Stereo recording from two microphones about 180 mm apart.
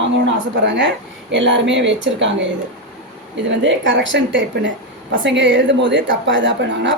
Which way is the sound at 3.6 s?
90° right.